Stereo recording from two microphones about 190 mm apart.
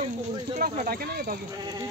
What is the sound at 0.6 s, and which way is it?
Speech, 50° right (ahead or behind).